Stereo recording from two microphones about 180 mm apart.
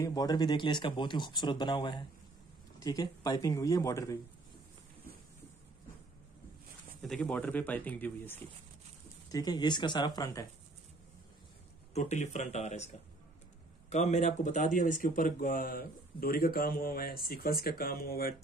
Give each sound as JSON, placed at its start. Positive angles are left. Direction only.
{"t": 0.0, "sound": "speech", "side_deg": 20}
{"t": 7.0, "sound": "speech", "side_deg": 5}
{"t": 9.3, "sound": "speech", "side_deg": 20}
{"t": 11.9, "sound": "speech", "side_deg": 40}